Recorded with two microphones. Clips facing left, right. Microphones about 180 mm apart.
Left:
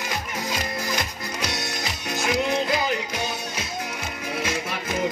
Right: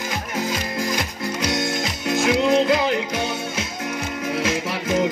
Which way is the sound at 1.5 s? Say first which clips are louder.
Right 7 dB; 85° right.